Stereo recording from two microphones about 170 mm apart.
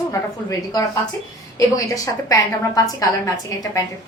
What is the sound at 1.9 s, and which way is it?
A woman's voice, 20° left (ahead or behind).